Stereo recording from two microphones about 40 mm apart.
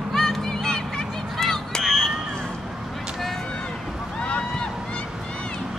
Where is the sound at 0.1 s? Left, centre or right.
Centre.